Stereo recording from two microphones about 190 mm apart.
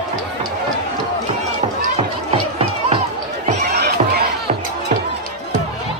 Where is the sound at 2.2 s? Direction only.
30° right (ahead or behind).